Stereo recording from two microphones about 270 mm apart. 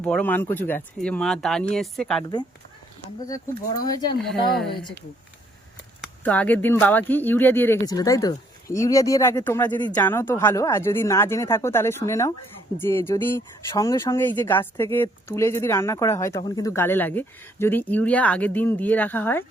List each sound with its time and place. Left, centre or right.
0.0 s speech: centre
3.2 s speech: centre
4.2 s speech: centre
4.7 s speech: centre
6.0 s speech: centre